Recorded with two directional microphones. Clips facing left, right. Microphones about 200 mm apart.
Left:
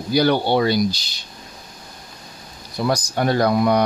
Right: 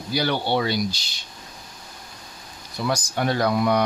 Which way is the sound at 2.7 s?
40° left (ahead or behind).